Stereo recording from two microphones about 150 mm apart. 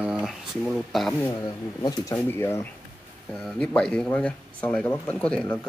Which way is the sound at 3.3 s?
Centre (ahead or behind).